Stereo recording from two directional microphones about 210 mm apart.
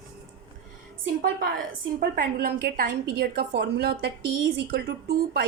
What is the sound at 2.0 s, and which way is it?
A woman's voice, 45° right (ahead or behind).